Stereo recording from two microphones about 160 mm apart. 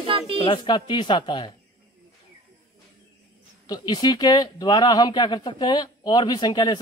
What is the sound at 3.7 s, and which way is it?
Speech, 25° left (ahead or behind).